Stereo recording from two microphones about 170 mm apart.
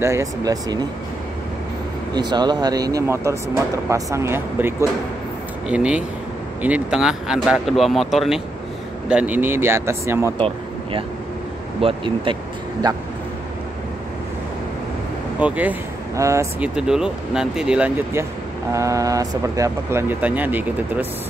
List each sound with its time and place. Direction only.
0.0 s speech: 20° right (ahead or behind)
2.1 s speech: 25° right (ahead or behind)
10.3 s speech: 30° right (ahead or behind)
15.4 s speech: 10° right (ahead or behind)
18.7 s speech: 20° right (ahead or behind)